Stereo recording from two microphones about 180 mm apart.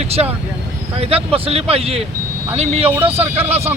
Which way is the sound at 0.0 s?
35° right (ahead or behind).